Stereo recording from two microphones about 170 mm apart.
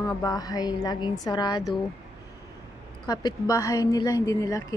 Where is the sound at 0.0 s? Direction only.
20° left (ahead or behind).